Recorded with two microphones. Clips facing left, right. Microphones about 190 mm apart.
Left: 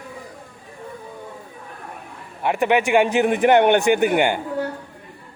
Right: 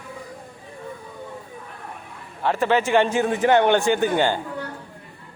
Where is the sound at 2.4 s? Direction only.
15° left (ahead or behind).